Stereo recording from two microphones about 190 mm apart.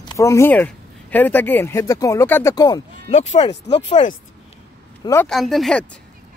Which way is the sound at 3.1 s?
35° left (ahead or behind).